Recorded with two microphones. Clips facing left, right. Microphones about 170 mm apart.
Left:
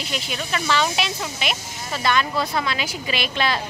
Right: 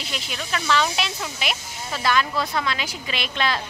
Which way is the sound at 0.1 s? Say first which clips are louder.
Left 2 dB; 5° left (ahead or behind).